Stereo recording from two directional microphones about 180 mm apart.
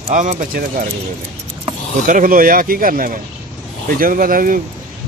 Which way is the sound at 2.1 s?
50° right (ahead or behind).